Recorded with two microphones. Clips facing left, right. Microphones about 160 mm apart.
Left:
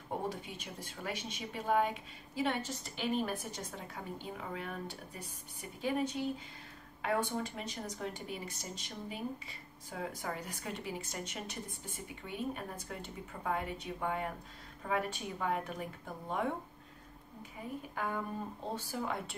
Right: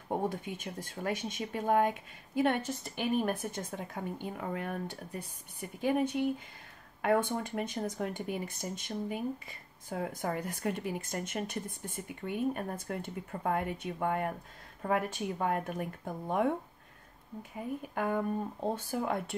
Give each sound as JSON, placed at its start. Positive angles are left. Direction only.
{"t": 0.3, "sound": "speech", "side_deg": -50}
{"t": 17.9, "sound": "speech", "side_deg": -50}